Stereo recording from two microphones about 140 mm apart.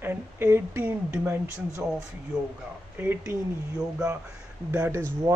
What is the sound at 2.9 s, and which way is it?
Speech, 15° right (ahead or behind).